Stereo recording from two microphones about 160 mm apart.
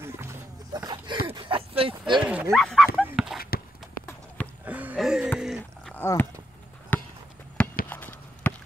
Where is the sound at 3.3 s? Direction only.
70° left (ahead or behind).